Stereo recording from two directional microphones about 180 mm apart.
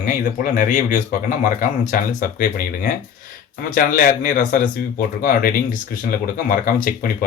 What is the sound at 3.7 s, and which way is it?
Speech, 50° left (ahead or behind).